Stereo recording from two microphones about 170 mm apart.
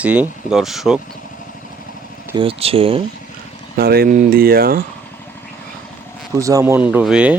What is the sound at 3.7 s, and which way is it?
Speech, 60° right (ahead or behind).